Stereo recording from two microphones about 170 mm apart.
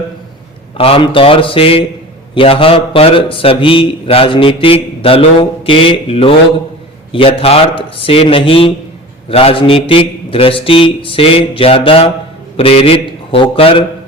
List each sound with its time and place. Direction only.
0.8 s speech: 30° left (ahead or behind)